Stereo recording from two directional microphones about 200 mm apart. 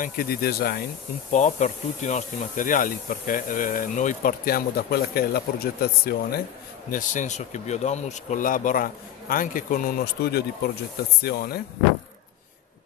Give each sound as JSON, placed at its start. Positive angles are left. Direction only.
{"t": 0.0, "sound": "speech", "side_deg": 45}
{"t": 1.3, "sound": "speech", "side_deg": 35}
{"t": 6.9, "sound": "speech", "side_deg": 40}